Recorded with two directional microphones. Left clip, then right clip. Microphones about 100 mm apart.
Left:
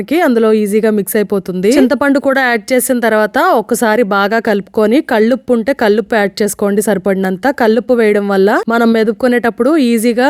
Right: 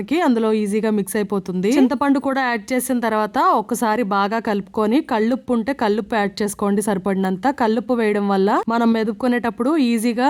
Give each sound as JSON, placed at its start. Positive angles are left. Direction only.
{"t": 0.3, "sound": "speech", "side_deg": 25}